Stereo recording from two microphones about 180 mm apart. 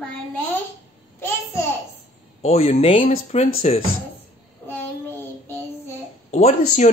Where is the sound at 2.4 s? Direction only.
35° left (ahead or behind).